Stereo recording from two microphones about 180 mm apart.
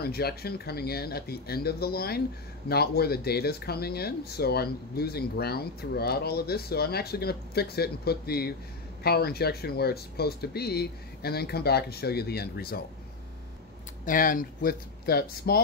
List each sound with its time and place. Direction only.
0.0 s speech: 60° left (ahead or behind)
14.0 s speech: 50° left (ahead or behind)